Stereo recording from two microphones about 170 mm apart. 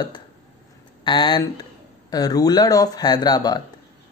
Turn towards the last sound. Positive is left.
turn(degrees=25)  # may be behind; listen again after turning